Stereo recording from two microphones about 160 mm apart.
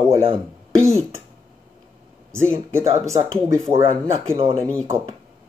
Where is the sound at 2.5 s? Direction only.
15° right (ahead or behind).